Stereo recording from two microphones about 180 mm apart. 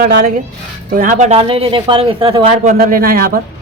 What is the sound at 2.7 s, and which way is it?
Speech, 50° right (ahead or behind).